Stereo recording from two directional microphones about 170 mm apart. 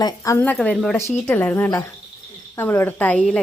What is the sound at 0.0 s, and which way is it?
A woman's voice, 15° left (ahead or behind).